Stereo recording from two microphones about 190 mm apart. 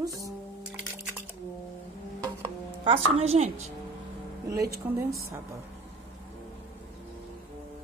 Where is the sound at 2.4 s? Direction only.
30° right (ahead or behind).